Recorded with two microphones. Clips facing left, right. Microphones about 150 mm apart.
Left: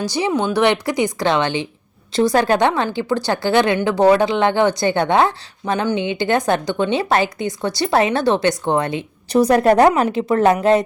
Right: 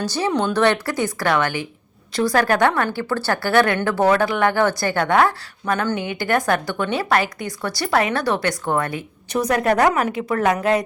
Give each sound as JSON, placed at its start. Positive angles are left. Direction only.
{"t": 0.0, "sound": "a woman's voice", "side_deg": 15}